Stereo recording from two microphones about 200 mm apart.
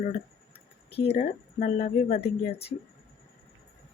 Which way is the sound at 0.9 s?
55° left (ahead or behind).